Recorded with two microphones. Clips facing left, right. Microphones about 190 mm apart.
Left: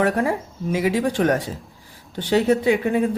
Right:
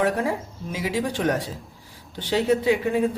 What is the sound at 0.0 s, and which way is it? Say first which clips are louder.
A man's voice: left 3 dB; 55° left (ahead or behind).